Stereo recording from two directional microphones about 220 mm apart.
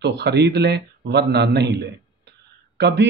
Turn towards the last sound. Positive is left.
turn(degrees=-50)  # may be behind; listen again after turning